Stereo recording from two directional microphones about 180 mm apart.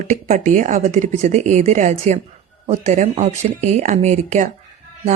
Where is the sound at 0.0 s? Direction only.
40° right (ahead or behind).